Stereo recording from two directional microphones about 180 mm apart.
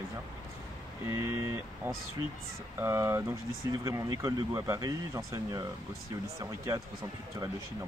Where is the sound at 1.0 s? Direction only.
15° right (ahead or behind).